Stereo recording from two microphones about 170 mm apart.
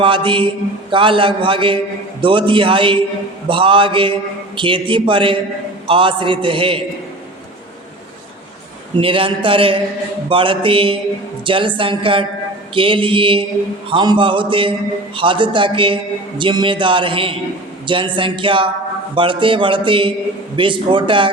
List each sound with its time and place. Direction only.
0.0 s a man's voice: 30° right (ahead or behind)
9.0 s a man's voice: 30° right (ahead or behind)